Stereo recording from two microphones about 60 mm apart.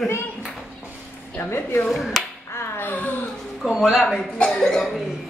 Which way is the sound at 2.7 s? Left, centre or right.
Left.